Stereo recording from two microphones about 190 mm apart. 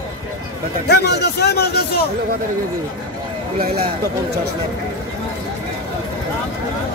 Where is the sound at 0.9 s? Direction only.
60° left (ahead or behind).